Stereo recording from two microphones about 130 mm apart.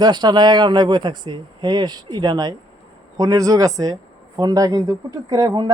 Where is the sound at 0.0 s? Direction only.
35° right (ahead or behind).